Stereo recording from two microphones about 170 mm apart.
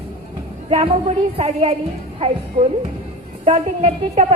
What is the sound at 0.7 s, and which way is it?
A woman's voice, 40° right (ahead or behind).